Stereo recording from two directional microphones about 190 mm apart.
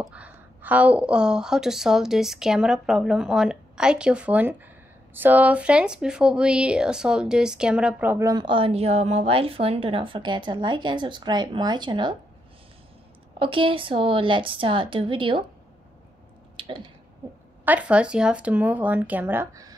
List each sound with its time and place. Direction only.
0.1 s a woman's voice: 10° right (ahead or behind); by 12.2 s 25° right (ahead or behind)
13.4 s speech: 25° right (ahead or behind)
16.5 s a sound: 30° right (ahead or behind)
17.6 s speech: 5° right (ahead or behind)